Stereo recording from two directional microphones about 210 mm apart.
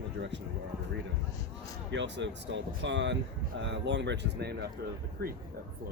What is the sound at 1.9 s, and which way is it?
Speech, 60° right (ahead or behind).